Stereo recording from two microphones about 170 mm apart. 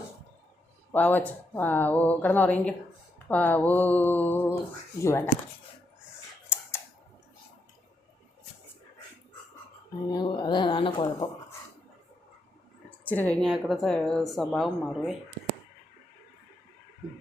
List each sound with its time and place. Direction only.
0.9 s speech: 10° left (ahead or behind)
6.5 s camera: 15° left (ahead or behind)
10.1 s speech: 25° left (ahead or behind)
13.1 s speech: 10° left (ahead or behind)